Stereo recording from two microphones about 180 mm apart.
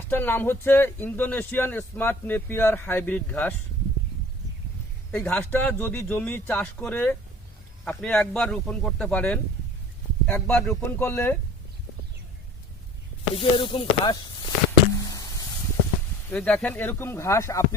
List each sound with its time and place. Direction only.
0.1 s a man's voice: 10° left (ahead or behind)
5.1 s a man's voice: 10° left (ahead or behind)
13.3 s a sound: 30° left (ahead or behind)
16.3 s a man's voice: 5° left (ahead or behind)